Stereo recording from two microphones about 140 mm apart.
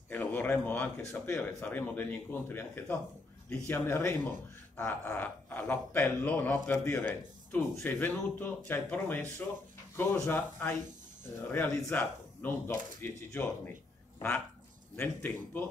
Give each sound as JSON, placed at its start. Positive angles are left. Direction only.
{"t": 0.1, "sound": "speech", "side_deg": 15}
{"t": 15.0, "sound": "speech", "side_deg": 15}